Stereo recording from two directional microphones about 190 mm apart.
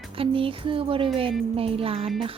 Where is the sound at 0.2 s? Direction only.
30° right (ahead or behind).